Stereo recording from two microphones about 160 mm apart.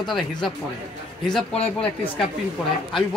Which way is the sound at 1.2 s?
5° left (ahead or behind).